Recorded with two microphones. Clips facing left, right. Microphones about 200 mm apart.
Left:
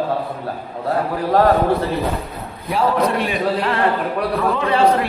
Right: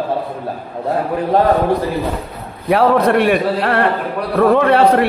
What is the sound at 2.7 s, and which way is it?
A man's voice, 65° right (ahead or behind).